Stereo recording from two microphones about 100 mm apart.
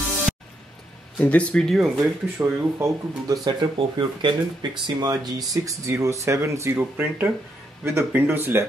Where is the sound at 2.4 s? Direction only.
25° right (ahead or behind).